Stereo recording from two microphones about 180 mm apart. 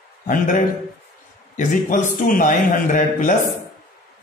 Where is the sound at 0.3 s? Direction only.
50° left (ahead or behind).